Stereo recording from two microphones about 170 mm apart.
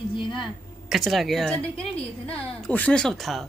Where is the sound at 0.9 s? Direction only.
Centre (ahead or behind).